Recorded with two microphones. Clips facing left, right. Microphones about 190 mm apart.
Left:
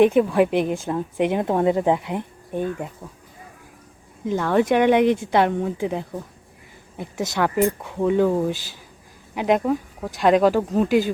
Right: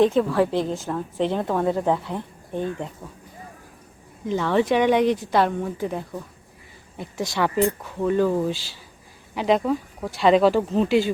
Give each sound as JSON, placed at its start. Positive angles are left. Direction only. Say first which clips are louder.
{"t": 0.0, "sound": "a woman's voice", "louder": "left 3 dB", "side_deg": 15}
{"t": 4.3, "sound": "a woman's voice", "louder": "left 1 dB", "side_deg": 10}
{"t": 10.8, "sound": "speech", "louder": "left 1 dB", "side_deg": 45}